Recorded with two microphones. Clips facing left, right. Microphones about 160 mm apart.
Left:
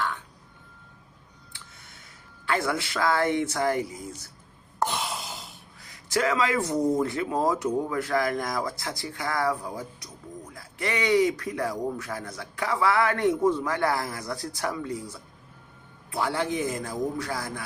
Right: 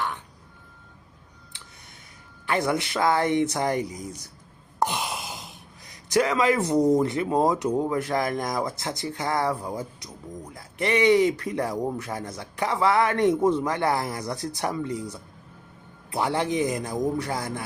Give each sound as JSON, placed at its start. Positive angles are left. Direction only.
{"t": 2.5, "sound": "speech", "side_deg": -20}